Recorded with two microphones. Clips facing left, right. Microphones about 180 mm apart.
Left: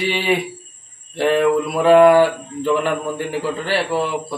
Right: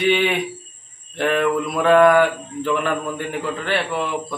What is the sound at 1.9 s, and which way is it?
Speech, 5° left (ahead or behind).